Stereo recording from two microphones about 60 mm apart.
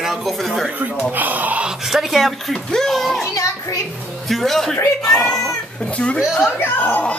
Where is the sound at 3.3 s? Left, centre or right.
Left.